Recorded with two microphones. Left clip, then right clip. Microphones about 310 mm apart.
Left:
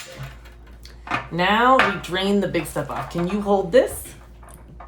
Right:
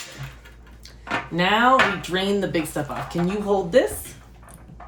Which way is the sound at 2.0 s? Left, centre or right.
Centre.